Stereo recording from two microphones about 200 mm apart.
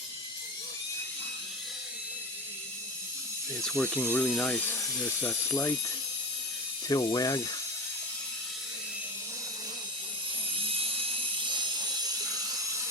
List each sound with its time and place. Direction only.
3.7 s speech: 5° left (ahead or behind)
6.8 s speech: 20° left (ahead or behind)
10.6 s helicopter: 30° right (ahead or behind)